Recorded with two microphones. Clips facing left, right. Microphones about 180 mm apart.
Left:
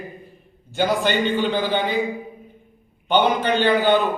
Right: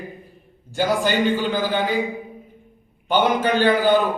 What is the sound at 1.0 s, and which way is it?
Speech, 5° right (ahead or behind).